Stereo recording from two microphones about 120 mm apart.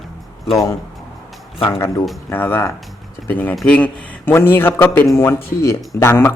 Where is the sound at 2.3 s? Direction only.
15° left (ahead or behind).